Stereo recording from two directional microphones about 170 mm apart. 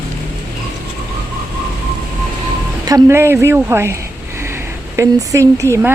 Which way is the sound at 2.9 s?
20° right (ahead or behind).